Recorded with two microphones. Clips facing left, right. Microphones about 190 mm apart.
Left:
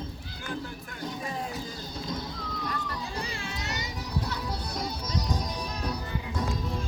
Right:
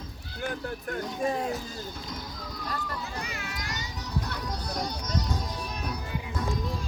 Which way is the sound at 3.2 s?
30° left (ahead or behind).